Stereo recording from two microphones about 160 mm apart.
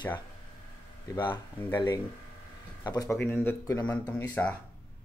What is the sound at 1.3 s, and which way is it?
Speech, 10° left (ahead or behind).